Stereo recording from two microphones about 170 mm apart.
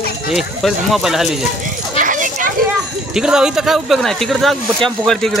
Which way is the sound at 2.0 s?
50° right (ahead or behind).